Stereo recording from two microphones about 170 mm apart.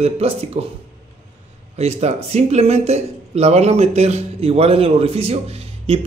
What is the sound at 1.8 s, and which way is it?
Speech, 40° right (ahead or behind).